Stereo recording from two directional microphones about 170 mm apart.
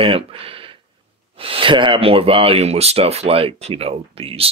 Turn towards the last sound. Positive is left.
turn(degrees=-35)  # may be behind; listen again after turning